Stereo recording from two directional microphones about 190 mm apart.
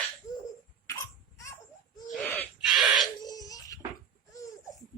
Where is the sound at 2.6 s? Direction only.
Centre (ahead or behind).